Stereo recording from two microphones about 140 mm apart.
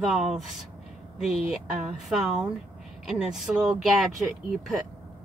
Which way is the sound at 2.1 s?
Centre (ahead or behind).